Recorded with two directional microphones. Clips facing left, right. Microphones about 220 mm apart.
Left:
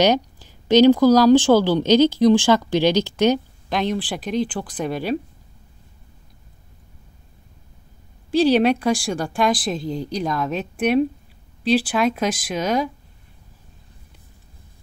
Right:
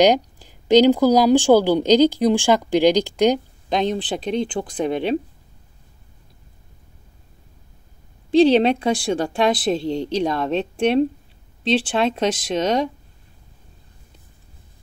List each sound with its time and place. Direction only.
0.0 s speech: 15° right (ahead or behind)
8.3 s speech: 20° right (ahead or behind)